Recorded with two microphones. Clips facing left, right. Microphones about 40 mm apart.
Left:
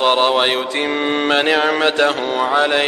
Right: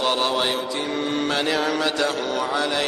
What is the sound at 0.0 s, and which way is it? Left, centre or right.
Mantra, left.